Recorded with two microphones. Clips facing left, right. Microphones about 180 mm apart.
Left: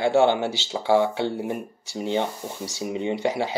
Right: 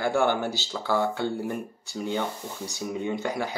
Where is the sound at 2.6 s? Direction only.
90° left.